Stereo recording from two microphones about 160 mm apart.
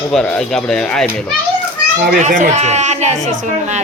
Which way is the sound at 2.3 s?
45° right (ahead or behind).